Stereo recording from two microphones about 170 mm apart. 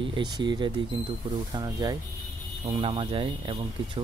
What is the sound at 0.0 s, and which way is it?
Speech, 30° right (ahead or behind).